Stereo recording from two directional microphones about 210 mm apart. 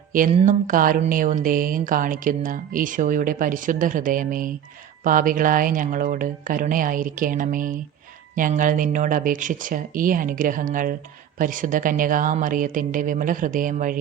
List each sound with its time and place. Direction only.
0.1 s speech: 40° right (ahead or behind)